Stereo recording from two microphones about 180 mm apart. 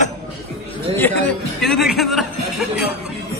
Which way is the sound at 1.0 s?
5° left (ahead or behind).